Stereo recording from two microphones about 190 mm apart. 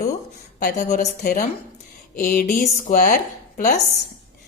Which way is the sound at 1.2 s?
45° left (ahead or behind).